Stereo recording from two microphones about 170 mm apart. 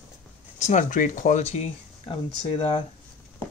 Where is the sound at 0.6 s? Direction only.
45° left (ahead or behind); by 2.8 s 30° left (ahead or behind).